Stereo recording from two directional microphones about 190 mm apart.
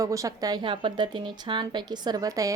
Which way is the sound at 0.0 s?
15° right (ahead or behind).